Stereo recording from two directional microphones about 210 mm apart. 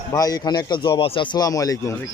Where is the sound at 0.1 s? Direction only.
15° left (ahead or behind).